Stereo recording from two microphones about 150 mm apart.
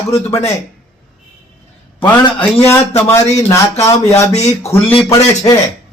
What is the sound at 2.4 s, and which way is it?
A man's voice, 15° left (ahead or behind).